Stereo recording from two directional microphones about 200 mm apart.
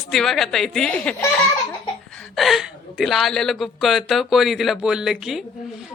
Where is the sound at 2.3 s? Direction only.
Centre (ahead or behind).